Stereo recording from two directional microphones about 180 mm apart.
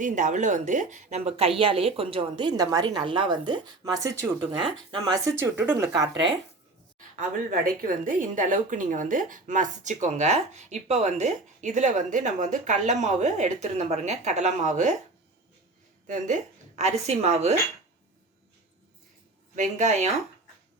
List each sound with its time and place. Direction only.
0.0 s a woman's voice: 45° right (ahead or behind); by 6.3 s 20° right (ahead or behind)
7.2 s a woman's voice: 55° right (ahead or behind)
16.0 s a woman's voice: 45° right (ahead or behind)
19.5 s a woman's voice: 40° right (ahead or behind)